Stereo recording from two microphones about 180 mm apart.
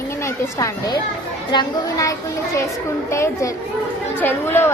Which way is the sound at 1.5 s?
20° left (ahead or behind).